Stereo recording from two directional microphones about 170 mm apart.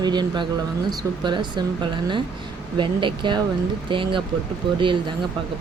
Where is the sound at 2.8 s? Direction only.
30° right (ahead or behind).